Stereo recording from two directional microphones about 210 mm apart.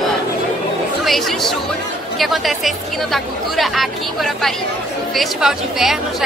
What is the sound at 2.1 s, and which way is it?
A woman's voice, centre (ahead or behind).